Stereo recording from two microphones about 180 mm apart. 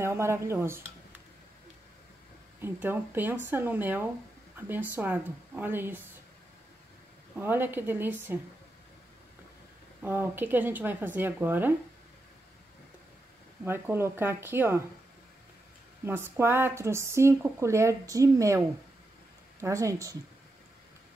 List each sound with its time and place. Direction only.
0.0 s speech: 15° right (ahead or behind)
2.6 s speech: 10° right (ahead or behind)
7.3 s speech: 10° right (ahead or behind)
10.0 s speech: 10° right (ahead or behind)
13.7 s speech: 15° right (ahead or behind)
16.1 s speech: 10° right (ahead or behind)
19.6 s speech: 15° right (ahead or behind)